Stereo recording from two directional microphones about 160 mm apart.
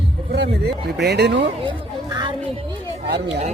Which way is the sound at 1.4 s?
30° right (ahead or behind).